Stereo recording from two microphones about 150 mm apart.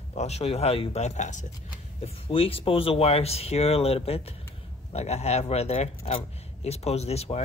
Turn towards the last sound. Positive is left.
turn(degrees=45)  # may be behind; listen again after turning